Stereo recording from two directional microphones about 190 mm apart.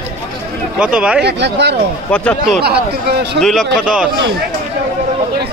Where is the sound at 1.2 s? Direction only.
60° right (ahead or behind).